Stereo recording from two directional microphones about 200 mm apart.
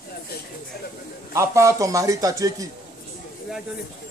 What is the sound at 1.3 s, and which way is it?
Speech, 15° right (ahead or behind).